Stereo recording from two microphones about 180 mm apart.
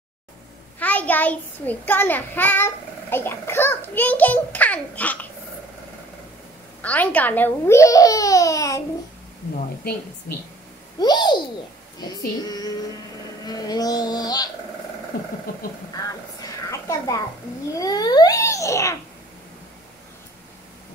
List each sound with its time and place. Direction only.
0.7 s a child's voice: 10° left (ahead or behind)
6.8 s a child's voice: 10° left (ahead or behind)
11.0 s speech: 25° left (ahead or behind)
15.9 s a child's voice: 20° left (ahead or behind)